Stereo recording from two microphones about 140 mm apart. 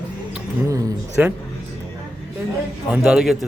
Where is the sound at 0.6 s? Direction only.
25° right (ahead or behind).